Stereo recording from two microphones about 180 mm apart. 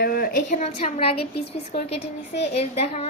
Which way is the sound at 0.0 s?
55° left (ahead or behind).